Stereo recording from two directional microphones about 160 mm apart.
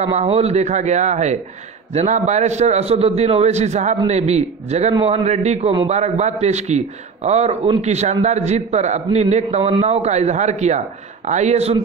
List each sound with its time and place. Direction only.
0.0 s a man's voice: 45° right (ahead or behind)